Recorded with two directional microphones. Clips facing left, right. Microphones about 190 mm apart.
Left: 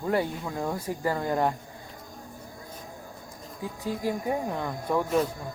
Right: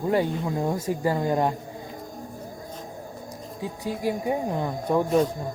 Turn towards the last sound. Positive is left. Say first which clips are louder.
# right 4 dB
turn(degrees=-20)  # may be behind; listen again after turning